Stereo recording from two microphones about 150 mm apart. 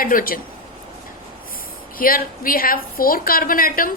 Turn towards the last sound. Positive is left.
turn(degrees=70)  # may be behind; listen again after turning